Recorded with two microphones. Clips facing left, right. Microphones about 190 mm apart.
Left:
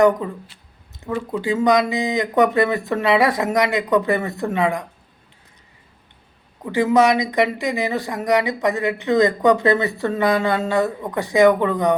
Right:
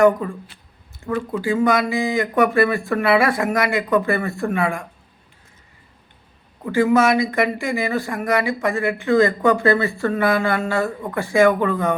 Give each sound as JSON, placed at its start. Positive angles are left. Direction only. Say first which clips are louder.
{"t": 0.2, "sound": "speech", "louder": "even", "side_deg": 20}
{"t": 6.7, "sound": "speech", "louder": "even", "side_deg": 20}